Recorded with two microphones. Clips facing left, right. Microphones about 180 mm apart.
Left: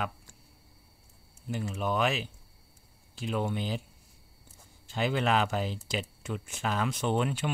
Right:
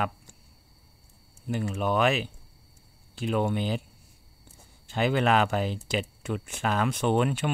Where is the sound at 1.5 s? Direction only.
60° right (ahead or behind).